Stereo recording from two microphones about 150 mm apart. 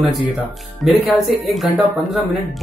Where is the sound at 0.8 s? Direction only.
Centre (ahead or behind).